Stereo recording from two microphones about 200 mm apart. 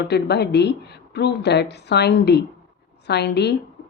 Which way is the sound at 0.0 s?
55° left (ahead or behind).